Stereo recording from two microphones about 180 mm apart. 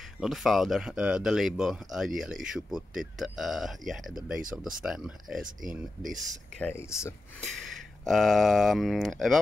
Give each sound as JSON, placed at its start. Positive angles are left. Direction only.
{"t": 0.2, "sound": "speech", "side_deg": 0}
{"t": 5.6, "sound": "speech", "side_deg": -50}
{"t": 6.1, "sound": "speech", "side_deg": 10}
{"t": 8.0, "sound": "speech", "side_deg": 0}